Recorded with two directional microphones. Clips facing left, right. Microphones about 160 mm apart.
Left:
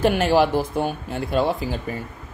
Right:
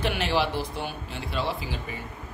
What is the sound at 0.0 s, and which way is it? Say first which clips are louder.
Speech: left 8 dB; 45° left (ahead or behind).